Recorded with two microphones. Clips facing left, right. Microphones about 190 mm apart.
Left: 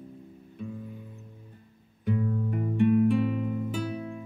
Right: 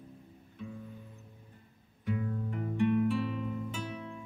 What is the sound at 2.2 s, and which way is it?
Music, 45° left (ahead or behind).